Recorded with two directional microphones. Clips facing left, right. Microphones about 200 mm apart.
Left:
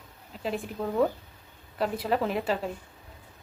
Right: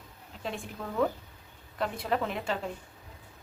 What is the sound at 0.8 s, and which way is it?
Speech, 30° left (ahead or behind).